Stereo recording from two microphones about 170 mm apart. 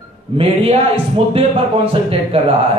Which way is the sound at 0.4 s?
35° right (ahead or behind).